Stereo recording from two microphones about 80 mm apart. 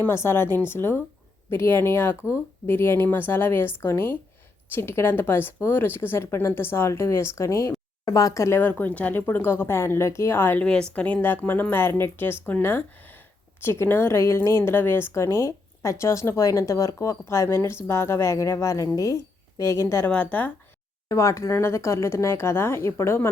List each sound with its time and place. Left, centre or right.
0.1 s speech: left
10.6 s a woman's voice: centre; by 20.1 s left
20.1 s speech: left
21.1 s speech: left